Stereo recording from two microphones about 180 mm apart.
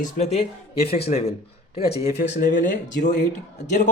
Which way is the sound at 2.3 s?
45° left (ahead or behind).